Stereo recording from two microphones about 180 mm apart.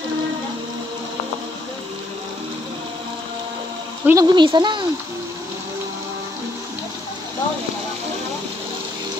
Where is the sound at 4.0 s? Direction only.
15° right (ahead or behind).